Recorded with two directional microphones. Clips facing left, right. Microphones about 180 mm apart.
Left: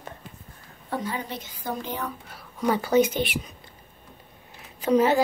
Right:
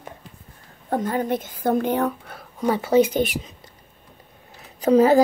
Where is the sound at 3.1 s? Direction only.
45° right (ahead or behind).